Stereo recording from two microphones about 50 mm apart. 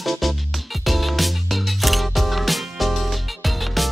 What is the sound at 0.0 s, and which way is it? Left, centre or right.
Music, centre.